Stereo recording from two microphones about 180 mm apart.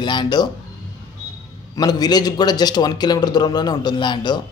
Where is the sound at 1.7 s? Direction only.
20° left (ahead or behind).